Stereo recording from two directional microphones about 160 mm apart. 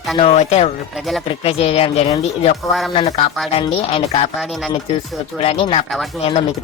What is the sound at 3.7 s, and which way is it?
Speech, 40° left (ahead or behind).